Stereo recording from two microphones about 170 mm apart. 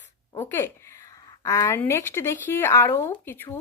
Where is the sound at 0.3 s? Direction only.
15° left (ahead or behind).